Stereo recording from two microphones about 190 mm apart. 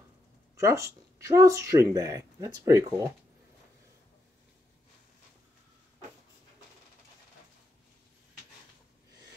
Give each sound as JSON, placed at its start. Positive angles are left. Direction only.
{"t": 0.6, "sound": "speech", "side_deg": -15}